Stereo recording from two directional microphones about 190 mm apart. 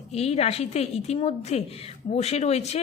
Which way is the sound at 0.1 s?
35° left (ahead or behind).